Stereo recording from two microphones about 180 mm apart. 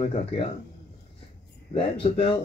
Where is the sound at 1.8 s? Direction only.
30° left (ahead or behind).